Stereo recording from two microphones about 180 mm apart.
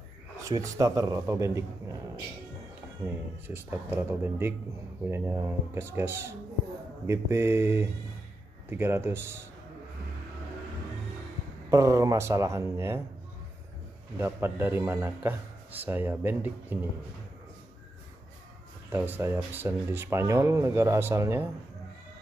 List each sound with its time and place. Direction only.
0.5 s a man's voice: 20° right (ahead or behind)
3.4 s a man's voice: 10° right (ahead or behind)
11.7 s a man's voice: 15° right (ahead or behind)
14.1 s a man's voice: 10° right (ahead or behind)
18.9 s a man's voice: 10° right (ahead or behind)